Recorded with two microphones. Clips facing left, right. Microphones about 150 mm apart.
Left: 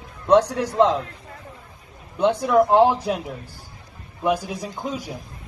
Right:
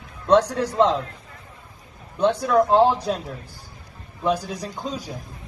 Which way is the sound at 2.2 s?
15° left (ahead or behind).